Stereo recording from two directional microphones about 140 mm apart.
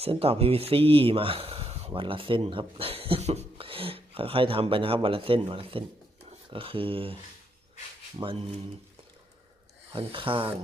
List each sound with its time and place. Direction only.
0.0 s speech: 45° right (ahead or behind)
1.9 s speech: 40° right (ahead or behind)
8.2 s speech: 40° right (ahead or behind)
9.9 s speech: 40° right (ahead or behind)